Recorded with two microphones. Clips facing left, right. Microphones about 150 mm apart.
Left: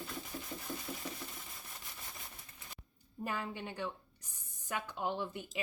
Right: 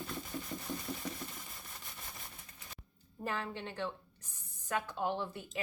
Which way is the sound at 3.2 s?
10° left (ahead or behind).